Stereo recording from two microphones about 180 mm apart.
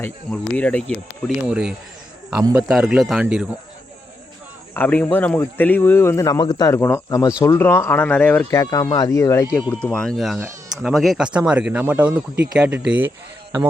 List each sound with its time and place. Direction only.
0.0 s speech: 5° left (ahead or behind)
2.4 s speech: 15° right (ahead or behind)
2.6 s speech: 5° right (ahead or behind)
4.7 s speech: 10° left (ahead or behind); by 13.1 s 10° right (ahead or behind)